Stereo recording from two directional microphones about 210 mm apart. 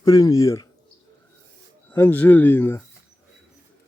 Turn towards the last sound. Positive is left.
turn(degrees=10)  # may be behind; listen again after turning